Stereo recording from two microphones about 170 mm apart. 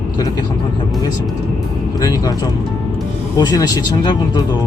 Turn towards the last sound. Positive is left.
turn(degrees=25)  # may be behind; listen again after turning